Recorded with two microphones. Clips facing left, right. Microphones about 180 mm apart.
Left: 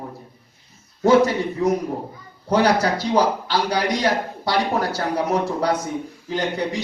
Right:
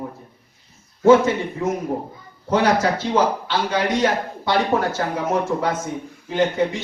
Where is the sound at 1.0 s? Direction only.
35° left (ahead or behind).